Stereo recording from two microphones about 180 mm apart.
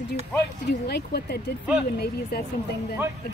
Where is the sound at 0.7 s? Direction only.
65° left (ahead or behind).